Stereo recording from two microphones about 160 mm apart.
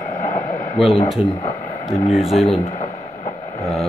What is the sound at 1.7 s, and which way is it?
Speech, 45° left (ahead or behind).